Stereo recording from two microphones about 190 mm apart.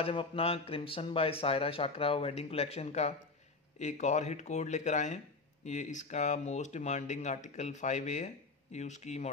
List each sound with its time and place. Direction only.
0.0 s speech: 30° left (ahead or behind)